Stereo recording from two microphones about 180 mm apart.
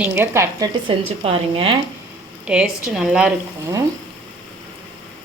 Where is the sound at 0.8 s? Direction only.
30° right (ahead or behind).